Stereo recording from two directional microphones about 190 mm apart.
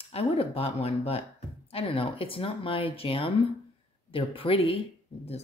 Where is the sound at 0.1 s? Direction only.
30° left (ahead or behind).